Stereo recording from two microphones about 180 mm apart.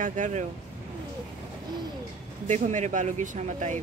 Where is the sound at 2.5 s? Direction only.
40° right (ahead or behind).